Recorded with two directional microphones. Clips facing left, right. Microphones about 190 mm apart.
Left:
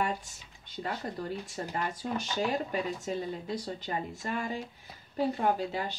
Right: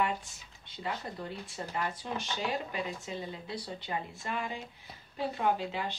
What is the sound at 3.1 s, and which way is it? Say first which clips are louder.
Speech: left 5 dB; 45° left (ahead or behind).